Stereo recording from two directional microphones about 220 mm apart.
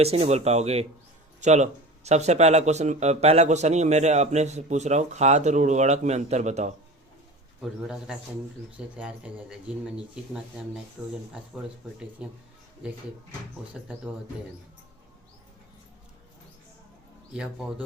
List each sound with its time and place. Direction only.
0.0 s speech: 30° right (ahead or behind)
7.6 s speech: centre (ahead or behind)
11.3 s speech: 5° right (ahead or behind)
13.7 s speech: centre (ahead or behind)
17.3 s speech: 5° right (ahead or behind)